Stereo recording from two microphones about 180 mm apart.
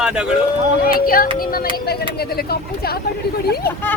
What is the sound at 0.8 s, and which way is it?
Speech, 55° left (ahead or behind).